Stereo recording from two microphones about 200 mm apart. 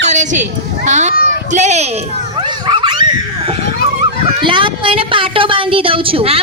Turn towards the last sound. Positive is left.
turn(degrees=-30)  # may be behind; listen again after turning